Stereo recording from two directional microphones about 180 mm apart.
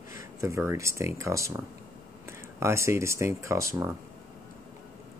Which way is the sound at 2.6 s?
15° right (ahead or behind).